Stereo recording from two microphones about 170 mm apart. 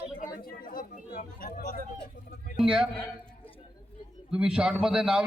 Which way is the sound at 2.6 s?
5° right (ahead or behind).